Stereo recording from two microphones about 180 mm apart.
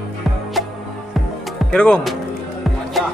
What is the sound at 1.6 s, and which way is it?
Speech, 5° left (ahead or behind).